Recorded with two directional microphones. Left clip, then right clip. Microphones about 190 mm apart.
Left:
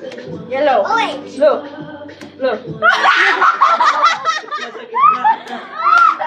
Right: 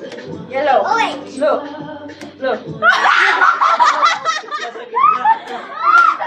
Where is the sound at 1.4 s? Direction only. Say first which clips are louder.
Left 3 dB; 50° left (ahead or behind).